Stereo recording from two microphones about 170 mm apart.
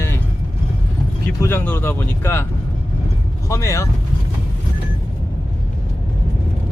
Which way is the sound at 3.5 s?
15° left (ahead or behind).